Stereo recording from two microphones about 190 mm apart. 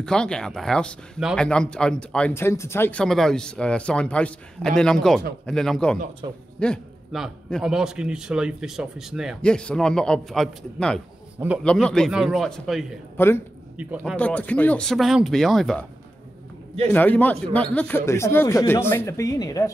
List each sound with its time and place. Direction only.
0.0 s speech: 5° left (ahead or behind)
6.2 s a man's voice: 25° right (ahead or behind)
6.6 s a man's voice: centre (ahead or behind)
11.6 s speech: 5° left (ahead or behind)
13.7 s speech: 5° right (ahead or behind)
14.1 s speech: 5° left (ahead or behind)
16.9 s speech: 10° left (ahead or behind)